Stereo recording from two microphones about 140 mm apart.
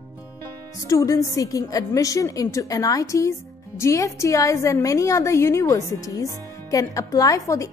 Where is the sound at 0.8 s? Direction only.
25° left (ahead or behind).